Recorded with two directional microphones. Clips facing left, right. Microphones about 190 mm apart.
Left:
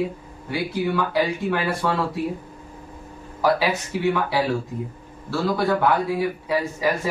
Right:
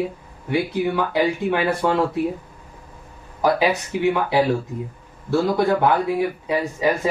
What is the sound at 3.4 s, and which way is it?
Speech, 20° right (ahead or behind).